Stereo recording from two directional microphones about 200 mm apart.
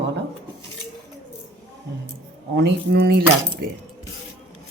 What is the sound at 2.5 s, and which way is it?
Speech, 55° right (ahead or behind).